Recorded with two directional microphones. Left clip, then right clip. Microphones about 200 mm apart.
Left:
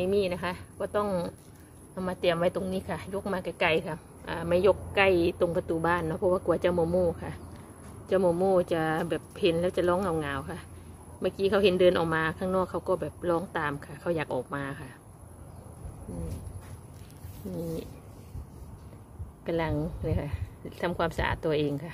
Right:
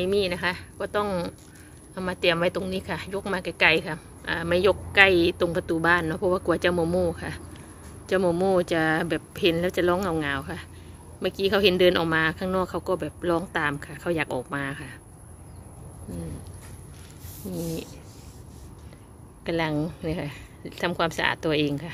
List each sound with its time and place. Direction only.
0.0 s a woman's voice: centre (ahead or behind)
19.4 s a woman's voice: centre (ahead or behind)